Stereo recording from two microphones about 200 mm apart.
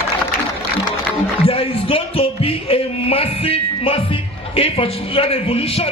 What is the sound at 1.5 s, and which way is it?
A man's voice, 30° left (ahead or behind).